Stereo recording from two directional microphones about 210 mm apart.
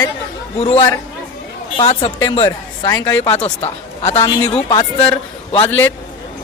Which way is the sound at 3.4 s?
30° left (ahead or behind).